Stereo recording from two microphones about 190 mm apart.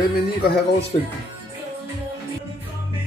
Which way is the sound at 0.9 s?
30° left (ahead or behind).